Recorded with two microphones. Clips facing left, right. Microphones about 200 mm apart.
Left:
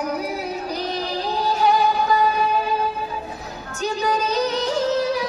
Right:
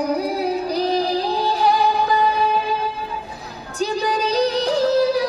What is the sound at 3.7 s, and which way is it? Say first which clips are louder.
Music: right 1 dB; 35° right (ahead or behind).